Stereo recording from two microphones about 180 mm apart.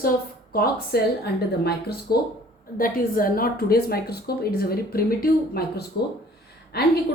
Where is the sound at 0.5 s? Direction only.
60° left (ahead or behind).